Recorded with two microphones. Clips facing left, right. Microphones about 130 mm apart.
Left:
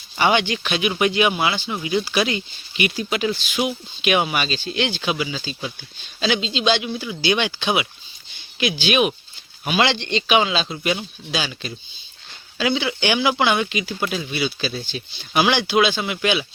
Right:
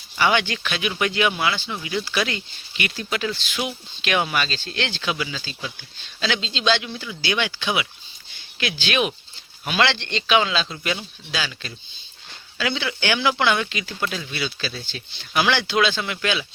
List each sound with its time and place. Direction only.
0.2 s speech: 20° left (ahead or behind)